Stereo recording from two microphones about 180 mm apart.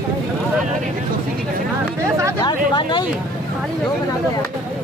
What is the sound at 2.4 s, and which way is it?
Speech, 25° left (ahead or behind).